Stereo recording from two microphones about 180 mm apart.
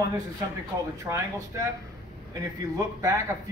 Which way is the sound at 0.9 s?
15° right (ahead or behind).